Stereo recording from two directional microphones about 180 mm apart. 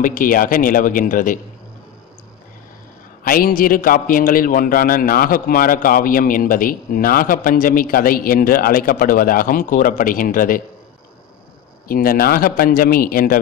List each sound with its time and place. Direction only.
0.0 s a man's voice: 50° left (ahead or behind)
3.3 s a man's voice: 55° left (ahead or behind)
11.9 s a man's voice: 55° left (ahead or behind)